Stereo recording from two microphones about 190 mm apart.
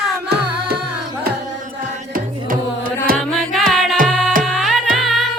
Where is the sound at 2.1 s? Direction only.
45° right (ahead or behind).